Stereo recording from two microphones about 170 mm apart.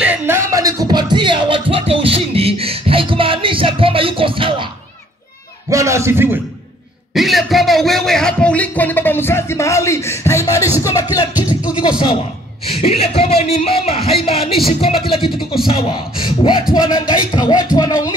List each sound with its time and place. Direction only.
0.0 s music: 10° right (ahead or behind); by 4.6 s 30° right (ahead or behind)
5.7 s a man's voice: 20° right (ahead or behind)
7.2 s a man's voice: centre (ahead or behind); by 10.7 s 20° left (ahead or behind)
10.8 s music: 20° left (ahead or behind)
11.3 s a man's voice: 10° right (ahead or behind)
12.6 s speech: 35° left (ahead or behind)
15.6 s music: 30° left (ahead or behind)